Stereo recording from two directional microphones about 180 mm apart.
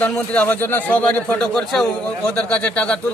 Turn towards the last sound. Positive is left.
turn(degrees=5)  # may be behind; listen again after turning